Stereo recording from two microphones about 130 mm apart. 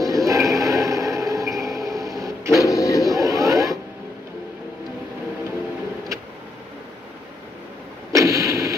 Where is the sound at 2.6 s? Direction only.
25° left (ahead or behind).